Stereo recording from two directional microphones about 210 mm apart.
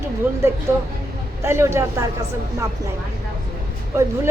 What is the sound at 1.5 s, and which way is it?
Speech, 15° right (ahead or behind).